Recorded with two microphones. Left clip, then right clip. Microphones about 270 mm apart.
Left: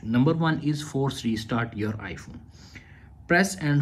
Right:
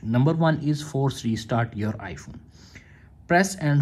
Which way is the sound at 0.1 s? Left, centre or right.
Right.